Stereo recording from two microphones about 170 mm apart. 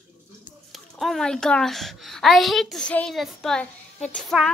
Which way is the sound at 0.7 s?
Centre (ahead or behind).